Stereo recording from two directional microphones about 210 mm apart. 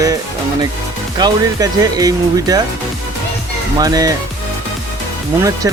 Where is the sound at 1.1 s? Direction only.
20° right (ahead or behind).